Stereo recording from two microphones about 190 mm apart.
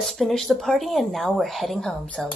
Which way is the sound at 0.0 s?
Centre (ahead or behind).